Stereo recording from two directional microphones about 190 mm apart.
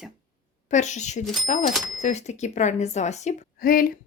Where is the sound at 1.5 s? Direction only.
40° left (ahead or behind).